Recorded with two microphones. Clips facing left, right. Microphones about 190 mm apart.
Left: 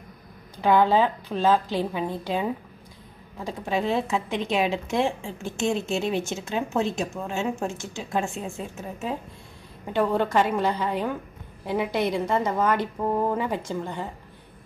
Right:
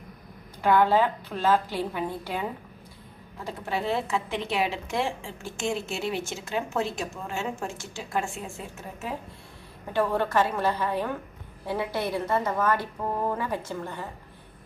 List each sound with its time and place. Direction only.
0.6 s a woman's voice: 20° left (ahead or behind)
3.4 s a woman's voice: 15° left (ahead or behind)